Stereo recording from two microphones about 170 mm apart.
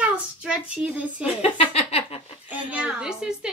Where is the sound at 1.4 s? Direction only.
35° left (ahead or behind).